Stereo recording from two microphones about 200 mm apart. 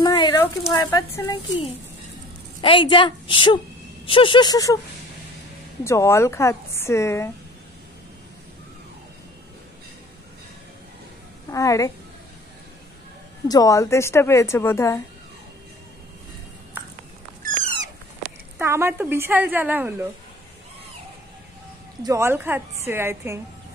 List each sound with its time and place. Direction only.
0.0 s a sound: 20° left (ahead or behind)
0.4 s a woman's voice: 15° left (ahead or behind)
2.6 s a woman's voice: 25° left (ahead or behind)
5.9 s a woman's voice: 15° left (ahead or behind)
11.5 s a woman's voice: 15° left (ahead or behind)
13.5 s a woman's voice: 15° left (ahead or behind)
18.6 s a woman's voice: 10° right (ahead or behind)
22.0 s a woman's voice: 15° right (ahead or behind)